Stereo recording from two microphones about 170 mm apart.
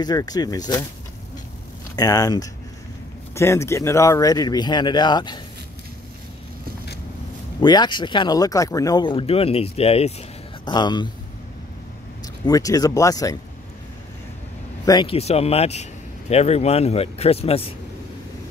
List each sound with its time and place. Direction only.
0.0 s speech: 25° left (ahead or behind)
2.0 s speech: 20° left (ahead or behind)
7.6 s speech: 25° left (ahead or behind)
10.6 s speech: 25° left (ahead or behind)
12.4 s speech: 20° left (ahead or behind)
14.9 s speech: 25° left (ahead or behind)
15.1 s speech: 35° left (ahead or behind)